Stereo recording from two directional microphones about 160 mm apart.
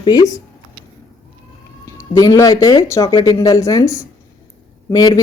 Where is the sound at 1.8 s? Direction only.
20° left (ahead or behind).